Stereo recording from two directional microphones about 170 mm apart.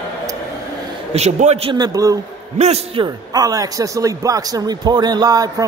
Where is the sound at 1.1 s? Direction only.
40° right (ahead or behind).